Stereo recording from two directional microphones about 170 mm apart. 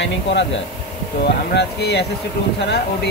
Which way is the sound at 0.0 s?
90° left.